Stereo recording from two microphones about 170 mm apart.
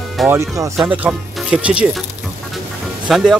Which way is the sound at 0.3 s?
15° right (ahead or behind).